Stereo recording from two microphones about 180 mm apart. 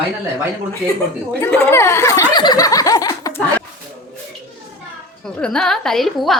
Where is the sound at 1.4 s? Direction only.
10° left (ahead or behind).